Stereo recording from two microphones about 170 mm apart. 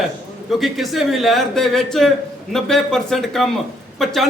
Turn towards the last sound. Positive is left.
turn(degrees=0)  # may be behind; listen again after turning